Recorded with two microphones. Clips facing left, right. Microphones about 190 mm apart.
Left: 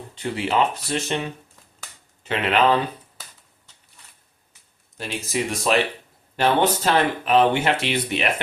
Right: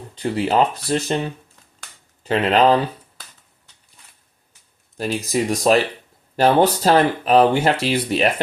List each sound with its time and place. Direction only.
0.2 s speech: 35° right (ahead or behind)
4.9 s speech: 40° right (ahead or behind)